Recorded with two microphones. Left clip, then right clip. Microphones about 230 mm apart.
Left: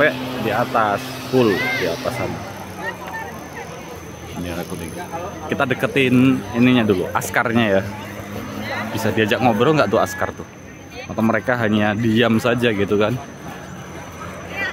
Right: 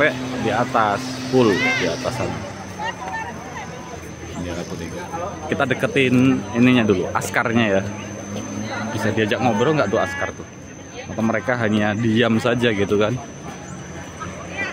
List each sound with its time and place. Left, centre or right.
0.0 s speech: centre
1.2 s speech: left
5.5 s speech: centre
8.9 s speech: centre